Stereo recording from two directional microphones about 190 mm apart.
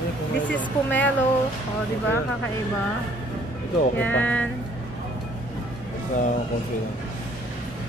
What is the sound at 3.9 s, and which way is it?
Speech, 10° left (ahead or behind).